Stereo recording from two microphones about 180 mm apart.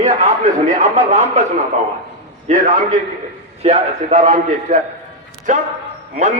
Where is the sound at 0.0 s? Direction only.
40° right (ahead or behind).